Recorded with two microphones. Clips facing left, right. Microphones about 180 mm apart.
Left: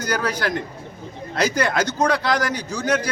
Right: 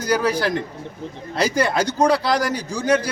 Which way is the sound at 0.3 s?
30° right (ahead or behind).